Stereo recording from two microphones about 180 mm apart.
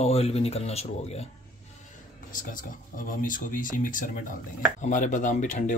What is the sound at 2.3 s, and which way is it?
Speech, 50° left (ahead or behind).